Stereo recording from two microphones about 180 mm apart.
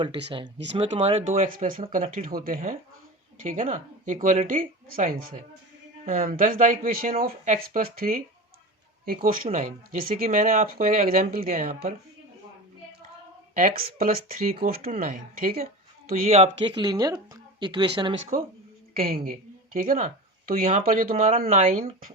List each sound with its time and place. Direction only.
0.8 s speech: 30° right (ahead or behind)
1.3 s speech: 45° right (ahead or behind)
6.1 s speech: 50° right (ahead or behind)
9.2 s speech: 50° right (ahead or behind)
13.5 s speech: 50° right (ahead or behind)
16.6 s speech: 25° right (ahead or behind)
18.3 s a woman's voice: 45° right (ahead or behind)